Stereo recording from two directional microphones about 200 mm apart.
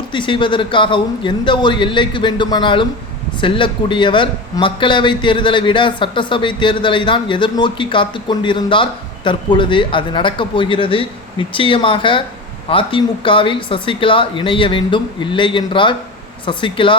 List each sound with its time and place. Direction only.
0.1 s a man's voice: 25° left (ahead or behind)